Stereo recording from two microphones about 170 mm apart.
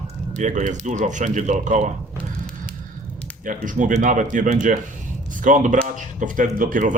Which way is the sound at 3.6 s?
45° right (ahead or behind).